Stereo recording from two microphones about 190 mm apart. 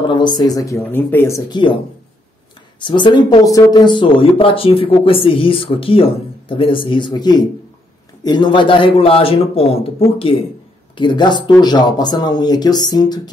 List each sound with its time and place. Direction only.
0.1 s speech: 25° left (ahead or behind)
2.8 s speech: 25° left (ahead or behind)